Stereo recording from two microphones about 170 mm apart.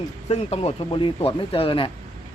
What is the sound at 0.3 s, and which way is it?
Speech, 35° left (ahead or behind).